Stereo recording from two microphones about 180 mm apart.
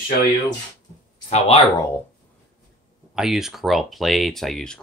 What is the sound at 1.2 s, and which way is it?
Speech, 35° left (ahead or behind).